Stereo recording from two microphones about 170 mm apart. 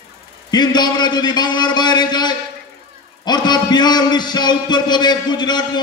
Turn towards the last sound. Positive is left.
turn(degrees=25)  # may be behind; listen again after turning